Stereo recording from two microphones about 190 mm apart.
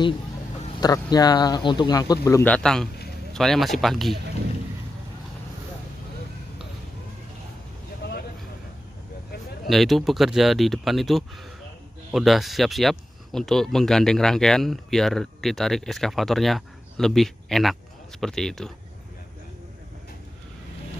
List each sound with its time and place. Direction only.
0.7 s a man's voice: 20° left (ahead or behind); by 4.2 s centre (ahead or behind)
9.7 s speech: centre (ahead or behind)